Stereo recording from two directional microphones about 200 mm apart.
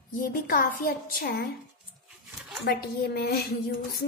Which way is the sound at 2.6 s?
50° left (ahead or behind).